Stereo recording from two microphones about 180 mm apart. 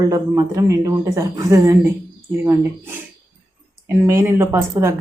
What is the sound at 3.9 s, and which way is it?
Speech, 15° right (ahead or behind).